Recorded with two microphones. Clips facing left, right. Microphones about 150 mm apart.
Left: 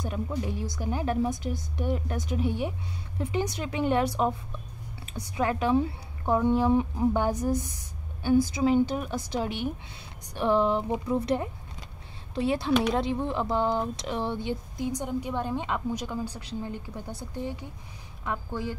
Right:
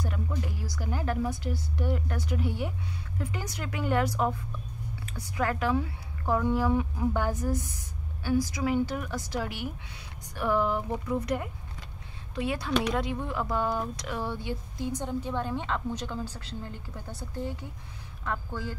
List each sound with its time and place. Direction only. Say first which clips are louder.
0.0 s a woman's voice: left 3 dB; 20° left (ahead or behind)